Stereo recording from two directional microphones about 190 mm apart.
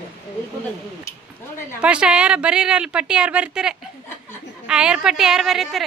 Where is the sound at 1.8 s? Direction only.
5° right (ahead or behind).